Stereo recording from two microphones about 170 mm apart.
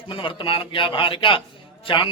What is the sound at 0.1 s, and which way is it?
A man's voice, 30° left (ahead or behind).